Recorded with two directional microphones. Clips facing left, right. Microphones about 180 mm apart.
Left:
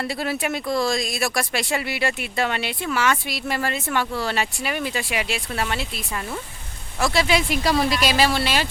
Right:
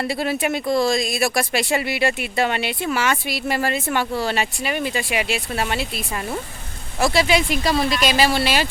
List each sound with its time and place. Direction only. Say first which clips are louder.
0.0 s speech: right 3 dB; 5° right (ahead or behind)
0.6 s speech: right 4 dB; 25° right (ahead or behind)
0.9 s speech: right 4 dB; 5° right (ahead or behind)
7.0 s speech: right 2 dB; centre (ahead or behind)